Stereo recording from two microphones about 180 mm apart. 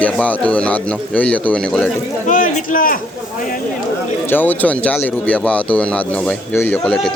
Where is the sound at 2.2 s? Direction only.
50° left (ahead or behind).